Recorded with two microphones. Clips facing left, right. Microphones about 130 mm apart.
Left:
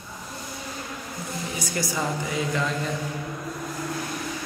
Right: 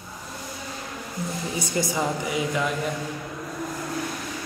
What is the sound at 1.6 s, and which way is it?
A man's voice, 20° right (ahead or behind).